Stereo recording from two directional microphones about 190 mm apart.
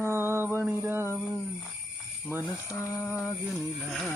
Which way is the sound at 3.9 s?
Centre (ahead or behind).